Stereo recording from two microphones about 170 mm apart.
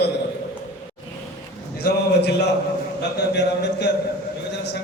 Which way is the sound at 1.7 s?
75° left (ahead or behind).